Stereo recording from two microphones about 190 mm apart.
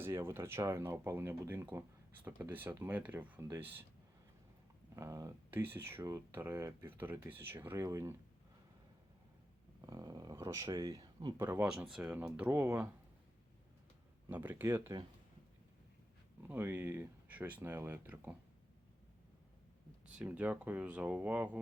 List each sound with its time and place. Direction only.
0.0 s speech: 15° right (ahead or behind)
4.9 s speech: 15° right (ahead or behind)
9.8 s speech: 20° right (ahead or behind)
11.4 s speech: 10° right (ahead or behind)
14.3 s speech: 10° right (ahead or behind)
16.5 s speech: 10° right (ahead or behind)
20.1 s speech: 5° right (ahead or behind)